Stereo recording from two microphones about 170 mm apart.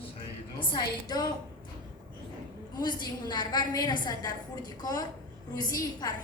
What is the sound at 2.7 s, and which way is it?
A woman's voice, 25° left (ahead or behind).